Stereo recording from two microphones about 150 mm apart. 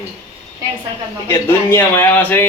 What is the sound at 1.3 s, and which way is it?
A man's voice, 15° left (ahead or behind).